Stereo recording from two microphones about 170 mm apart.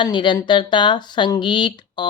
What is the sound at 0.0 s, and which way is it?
Speech, 30° left (ahead or behind).